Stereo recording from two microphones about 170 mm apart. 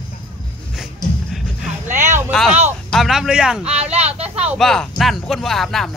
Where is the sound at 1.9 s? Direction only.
45° right (ahead or behind).